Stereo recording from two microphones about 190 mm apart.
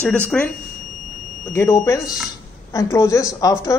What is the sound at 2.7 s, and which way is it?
Speech, 15° left (ahead or behind).